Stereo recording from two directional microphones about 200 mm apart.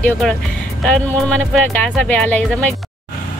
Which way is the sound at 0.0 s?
5° left (ahead or behind).